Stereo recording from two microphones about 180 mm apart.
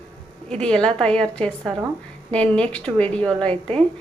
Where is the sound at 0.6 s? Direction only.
5° left (ahead or behind).